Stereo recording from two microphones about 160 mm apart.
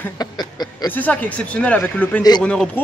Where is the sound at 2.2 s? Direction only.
25° left (ahead or behind).